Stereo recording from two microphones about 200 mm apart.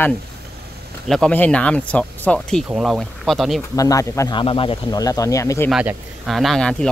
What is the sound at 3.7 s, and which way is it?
Speech, 15° left (ahead or behind).